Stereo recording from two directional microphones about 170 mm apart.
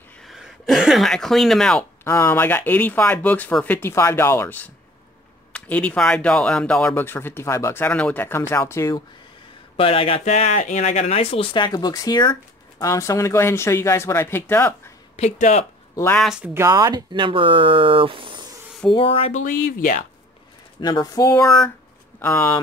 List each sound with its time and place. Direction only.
0.2 s a sound: centre (ahead or behind)
2.0 s speech: 15° left (ahead or behind)
9.8 s speech: 35° left (ahead or behind); by 14.8 s 15° left (ahead or behind)
15.1 s speech: 40° left (ahead or behind)
16.2 s speech: 5° right (ahead or behind)
16.5 s speech: 20° right (ahead or behind)
18.9 s speech: 30° left (ahead or behind); by 20.0 s 50° left (ahead or behind)
20.8 s speech: 25° left (ahead or behind)